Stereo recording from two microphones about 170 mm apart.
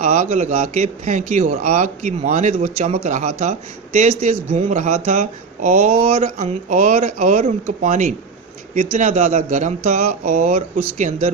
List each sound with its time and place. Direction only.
0.0 s speech: 40° right (ahead or behind)